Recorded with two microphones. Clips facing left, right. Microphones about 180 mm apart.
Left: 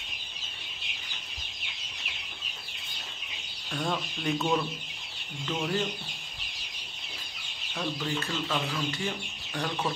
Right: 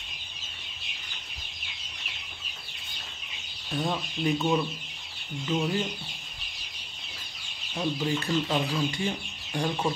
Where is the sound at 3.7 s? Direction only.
15° right (ahead or behind).